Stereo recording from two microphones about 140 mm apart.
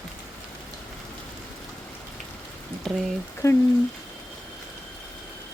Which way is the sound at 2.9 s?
5° left (ahead or behind).